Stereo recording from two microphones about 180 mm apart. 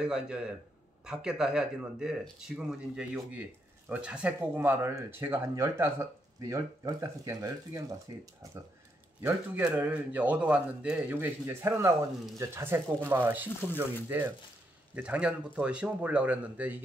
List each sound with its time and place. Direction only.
0.0 s a man's voice: 5° right (ahead or behind); by 8.2 s 20° right (ahead or behind)
9.2 s a man's voice: 5° right (ahead or behind)